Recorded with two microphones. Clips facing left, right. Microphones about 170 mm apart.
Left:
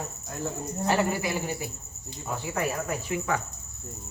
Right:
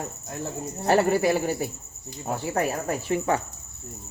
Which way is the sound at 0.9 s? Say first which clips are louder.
Right 6 dB; 45° right (ahead or behind).